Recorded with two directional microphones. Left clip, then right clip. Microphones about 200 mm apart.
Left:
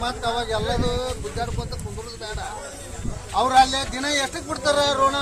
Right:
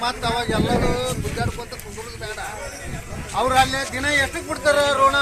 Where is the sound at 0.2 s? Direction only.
45° left (ahead or behind).